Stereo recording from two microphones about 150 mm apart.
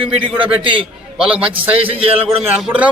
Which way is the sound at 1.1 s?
5° right (ahead or behind).